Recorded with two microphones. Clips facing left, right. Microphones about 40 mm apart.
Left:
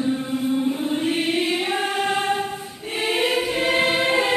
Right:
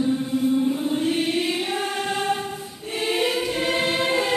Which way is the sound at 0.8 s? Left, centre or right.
Centre.